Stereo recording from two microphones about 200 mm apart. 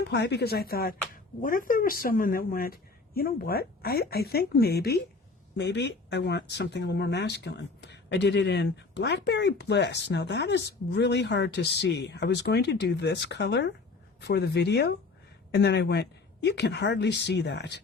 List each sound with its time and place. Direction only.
0.0 s speech: 55° left (ahead or behind)